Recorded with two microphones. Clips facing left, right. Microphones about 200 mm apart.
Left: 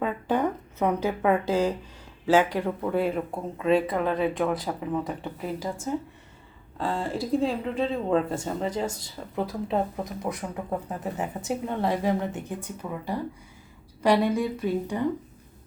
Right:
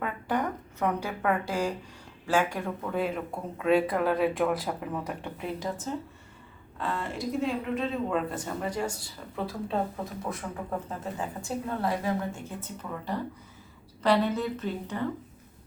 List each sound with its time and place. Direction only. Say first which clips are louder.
0.0 s a sound: left 5 dB; 25° left (ahead or behind)
1.0 s a woman's voice: left 5 dB; 20° left (ahead or behind)
2.9 s speech: left 3 dB; 5° left (ahead or behind)
6.7 s a woman's voice: left 4 dB; 30° left (ahead or behind); by 15.1 s 15° left (ahead or behind)